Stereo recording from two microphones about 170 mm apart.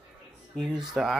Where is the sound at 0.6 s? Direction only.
Centre (ahead or behind).